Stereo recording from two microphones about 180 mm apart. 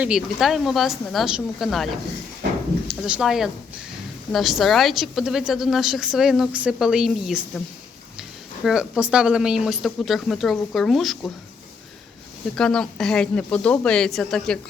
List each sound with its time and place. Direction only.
0.0 s a woman's voice: 5° right (ahead or behind)
8.6 s a woman's voice: 5° right (ahead or behind)
12.5 s a woman's voice: 5° left (ahead or behind)